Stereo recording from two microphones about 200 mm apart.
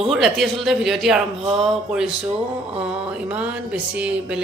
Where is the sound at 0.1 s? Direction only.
Centre (ahead or behind).